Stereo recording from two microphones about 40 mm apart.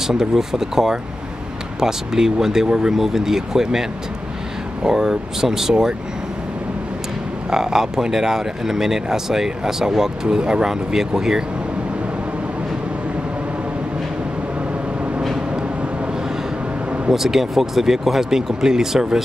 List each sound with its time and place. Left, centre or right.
0.0 s speech: centre
4.8 s speech: centre
7.5 s speech: centre
17.1 s speech: centre